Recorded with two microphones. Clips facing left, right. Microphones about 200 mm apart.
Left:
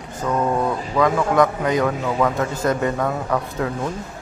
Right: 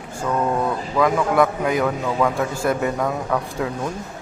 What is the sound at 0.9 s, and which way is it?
A man's voice, 5° right (ahead or behind).